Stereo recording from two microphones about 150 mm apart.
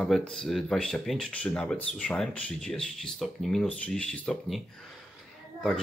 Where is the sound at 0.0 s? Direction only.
Centre (ahead or behind).